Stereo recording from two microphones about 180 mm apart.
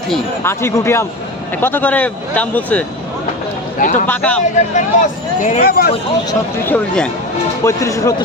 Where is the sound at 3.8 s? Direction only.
45° left (ahead or behind).